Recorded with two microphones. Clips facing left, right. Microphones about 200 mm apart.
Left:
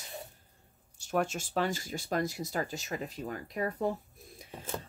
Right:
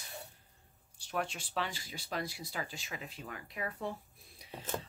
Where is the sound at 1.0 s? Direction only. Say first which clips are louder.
Left 7 dB; 45° left (ahead or behind).